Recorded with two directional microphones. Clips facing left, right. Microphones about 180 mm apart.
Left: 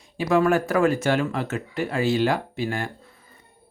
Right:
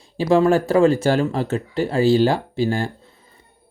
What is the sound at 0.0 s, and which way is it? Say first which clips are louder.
Speech: right 4 dB; 30° right (ahead or behind).